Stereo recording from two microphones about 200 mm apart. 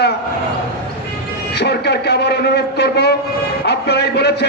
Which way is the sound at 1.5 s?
55° left (ahead or behind).